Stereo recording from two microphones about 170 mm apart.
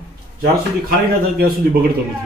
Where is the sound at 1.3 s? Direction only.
60° right (ahead or behind).